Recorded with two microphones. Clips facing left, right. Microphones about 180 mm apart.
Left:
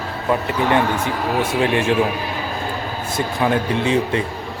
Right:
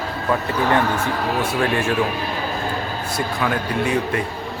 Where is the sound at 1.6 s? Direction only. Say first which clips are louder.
Left 3 dB; 20° left (ahead or behind).